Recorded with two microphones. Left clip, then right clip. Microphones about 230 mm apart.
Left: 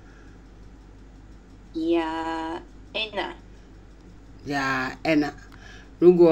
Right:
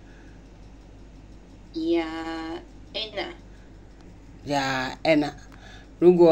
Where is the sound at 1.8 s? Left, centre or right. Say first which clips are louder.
Left 2 dB; centre.